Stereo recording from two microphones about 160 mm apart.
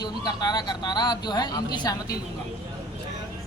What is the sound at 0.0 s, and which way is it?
A woman's voice, 25° left (ahead or behind).